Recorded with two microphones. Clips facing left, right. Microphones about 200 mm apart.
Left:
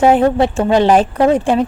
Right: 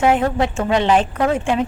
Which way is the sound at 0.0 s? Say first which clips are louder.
Left 5 dB; 35° left (ahead or behind).